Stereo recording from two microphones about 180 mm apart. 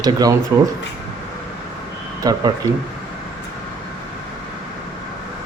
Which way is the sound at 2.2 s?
20° right (ahead or behind).